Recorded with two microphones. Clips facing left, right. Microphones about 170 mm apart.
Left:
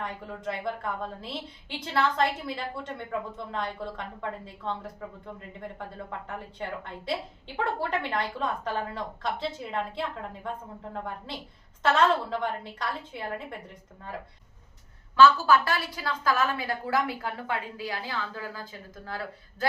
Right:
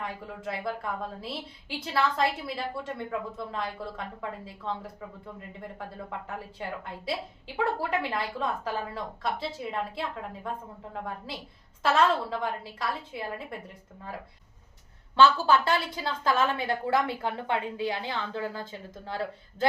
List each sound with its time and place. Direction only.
0.0 s a woman's voice: 5° right (ahead or behind)
15.1 s a woman's voice: 25° right (ahead or behind)